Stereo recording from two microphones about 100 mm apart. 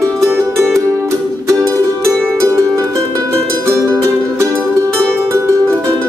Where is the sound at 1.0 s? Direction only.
30° right (ahead or behind).